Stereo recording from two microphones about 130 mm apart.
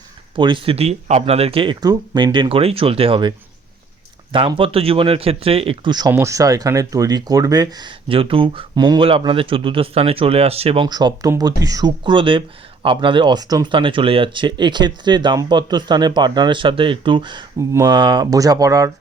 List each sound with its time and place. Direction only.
0.3 s speech: 40° right (ahead or behind)
6.1 s speech: 20° right (ahead or behind); by 10.8 s 50° right (ahead or behind)
10.8 s speech: 35° right (ahead or behind)
17.6 s speech: 25° right (ahead or behind)
17.9 s speech: 35° right (ahead or behind)